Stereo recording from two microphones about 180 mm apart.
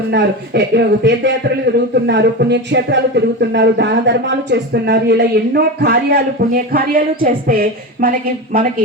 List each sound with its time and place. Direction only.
0.1 s a man's voice: 70° right (ahead or behind)
6.7 s a woman's voice: 50° right (ahead or behind)